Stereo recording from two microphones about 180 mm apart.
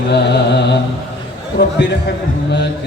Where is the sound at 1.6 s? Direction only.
70° left (ahead or behind).